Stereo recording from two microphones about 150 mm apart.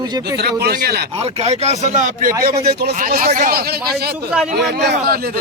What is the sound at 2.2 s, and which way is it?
Speech, 75° right (ahead or behind).